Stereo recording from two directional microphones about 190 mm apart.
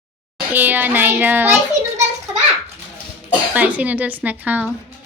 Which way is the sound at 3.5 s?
10° right (ahead or behind).